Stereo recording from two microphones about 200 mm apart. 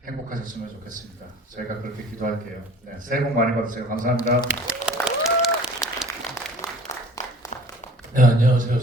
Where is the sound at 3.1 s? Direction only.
45° right (ahead or behind).